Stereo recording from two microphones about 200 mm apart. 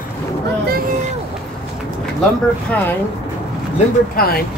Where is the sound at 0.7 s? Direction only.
50° right (ahead or behind).